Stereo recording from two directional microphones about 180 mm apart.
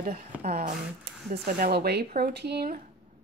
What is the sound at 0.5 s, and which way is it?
Speech, 55° right (ahead or behind).